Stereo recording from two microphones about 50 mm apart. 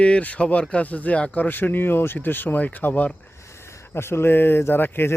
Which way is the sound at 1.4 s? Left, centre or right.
Left.